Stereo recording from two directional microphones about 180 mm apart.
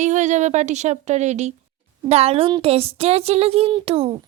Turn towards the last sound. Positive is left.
turn(degrees=-35)  # may be behind; listen again after turning